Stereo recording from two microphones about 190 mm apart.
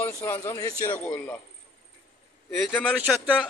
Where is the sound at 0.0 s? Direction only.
15° left (ahead or behind).